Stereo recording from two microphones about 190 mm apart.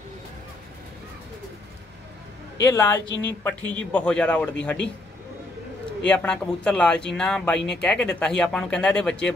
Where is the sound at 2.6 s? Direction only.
15° left (ahead or behind).